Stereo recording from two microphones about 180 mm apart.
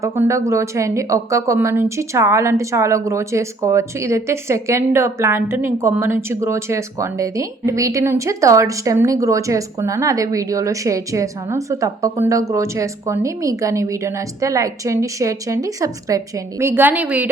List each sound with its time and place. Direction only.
0.0 s a woman's voice: 15° right (ahead or behind)